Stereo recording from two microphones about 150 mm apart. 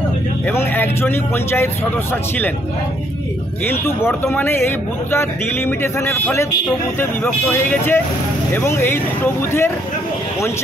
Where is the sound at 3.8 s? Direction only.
15° left (ahead or behind).